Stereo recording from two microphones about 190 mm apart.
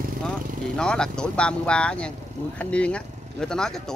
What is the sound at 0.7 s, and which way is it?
Speech, 5° left (ahead or behind).